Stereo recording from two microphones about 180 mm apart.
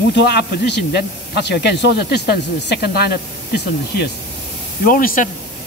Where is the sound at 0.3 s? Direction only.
65° left (ahead or behind).